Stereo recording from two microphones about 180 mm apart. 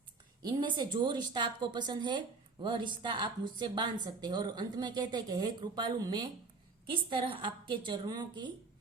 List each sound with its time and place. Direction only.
0.4 s a woman's voice: 25° right (ahead or behind)